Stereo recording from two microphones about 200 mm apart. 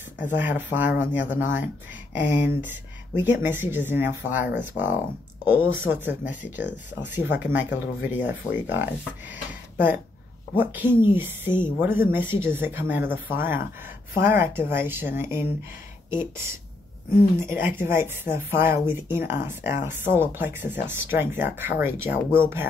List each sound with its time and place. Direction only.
0.2 s speech: 10° right (ahead or behind)
9.5 s a sound: 10° right (ahead or behind)
10.5 s speech: 10° right (ahead or behind)
17.4 s speech: 10° right (ahead or behind)